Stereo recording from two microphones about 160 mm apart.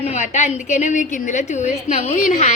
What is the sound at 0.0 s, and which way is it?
A woman's voice, 45° left (ahead or behind).